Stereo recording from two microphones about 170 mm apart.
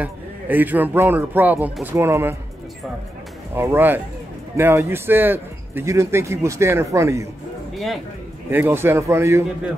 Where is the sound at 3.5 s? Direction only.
15° right (ahead or behind).